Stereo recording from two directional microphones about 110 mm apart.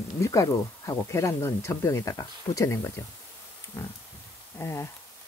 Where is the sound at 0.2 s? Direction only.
25° left (ahead or behind).